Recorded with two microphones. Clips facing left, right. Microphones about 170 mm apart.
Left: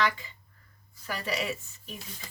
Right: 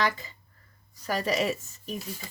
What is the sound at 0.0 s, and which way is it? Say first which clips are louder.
Speech: right 1 dB; 40° right (ahead or behind).